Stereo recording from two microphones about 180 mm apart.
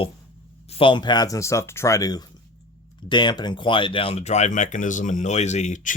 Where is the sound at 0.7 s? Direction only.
30° left (ahead or behind).